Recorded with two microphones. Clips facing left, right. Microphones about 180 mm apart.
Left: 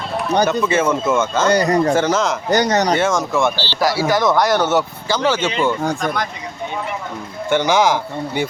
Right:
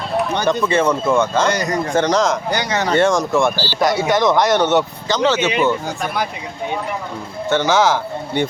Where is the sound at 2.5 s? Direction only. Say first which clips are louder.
Left 4 dB; 40° left (ahead or behind).